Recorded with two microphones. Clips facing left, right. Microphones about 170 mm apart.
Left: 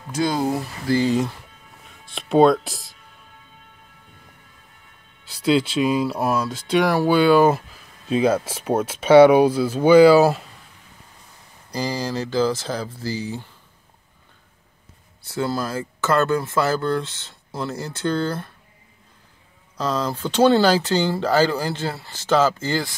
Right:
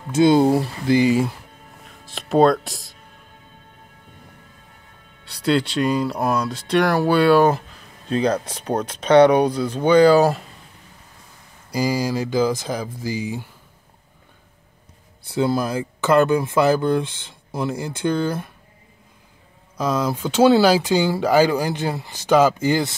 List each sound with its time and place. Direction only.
0.1 s speech: 25° right (ahead or behind)
0.9 s speech: 10° right (ahead or behind)
5.2 s speech: centre (ahead or behind)
11.7 s speech: 10° right (ahead or behind)
15.2 s speech: 15° right (ahead or behind)
19.8 s speech: 10° right (ahead or behind)